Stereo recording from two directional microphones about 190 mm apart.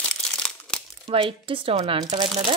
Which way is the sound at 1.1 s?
30° right (ahead or behind).